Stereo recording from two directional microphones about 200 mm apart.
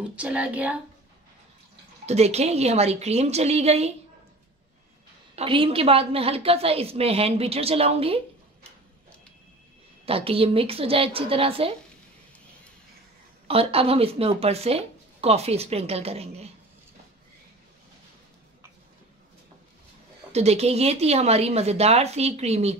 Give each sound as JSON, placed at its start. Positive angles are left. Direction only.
{"t": 0.1, "sound": "speech", "side_deg": -5}
{"t": 2.0, "sound": "speech", "side_deg": -30}
{"t": 5.3, "sound": "a woman's voice", "side_deg": -30}
{"t": 10.0, "sound": "a woman's voice", "side_deg": -30}
{"t": 13.5, "sound": "speech", "side_deg": -30}
{"t": 20.3, "sound": "speech", "side_deg": -30}